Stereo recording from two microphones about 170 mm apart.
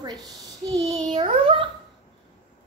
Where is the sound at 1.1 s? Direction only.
35° right (ahead or behind).